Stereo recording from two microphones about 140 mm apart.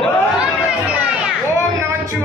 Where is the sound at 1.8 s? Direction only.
20° right (ahead or behind).